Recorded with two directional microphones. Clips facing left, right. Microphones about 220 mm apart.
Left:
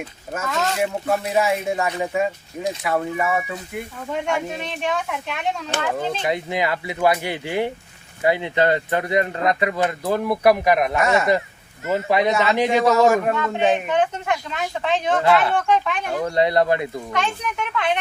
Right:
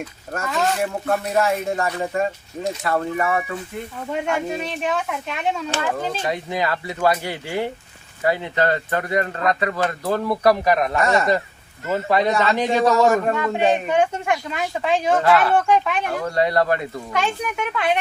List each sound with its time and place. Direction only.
0.3 s speech: centre (ahead or behind)
4.3 s speech: 5° right (ahead or behind)
6.2 s speech: 20° left (ahead or behind)
13.3 s speech: 10° right (ahead or behind)
15.2 s speech: 10° left (ahead or behind)
15.5 s speech: 10° right (ahead or behind)
16.3 s speech: 20° left (ahead or behind)
17.1 s speech: 5° right (ahead or behind)